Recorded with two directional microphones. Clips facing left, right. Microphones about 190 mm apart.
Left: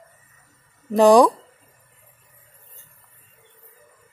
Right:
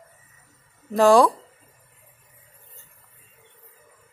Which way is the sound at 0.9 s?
15° left (ahead or behind).